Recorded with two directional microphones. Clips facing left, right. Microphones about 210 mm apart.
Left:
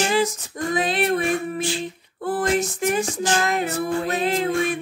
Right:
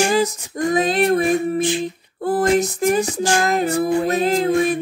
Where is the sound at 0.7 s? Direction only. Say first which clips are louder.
Right 5 dB; 40° right (ahead or behind).